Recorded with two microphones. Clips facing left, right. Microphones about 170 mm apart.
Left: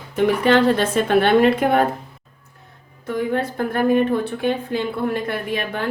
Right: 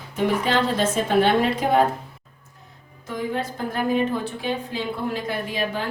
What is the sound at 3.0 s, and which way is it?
A woman's voice, 60° left (ahead or behind).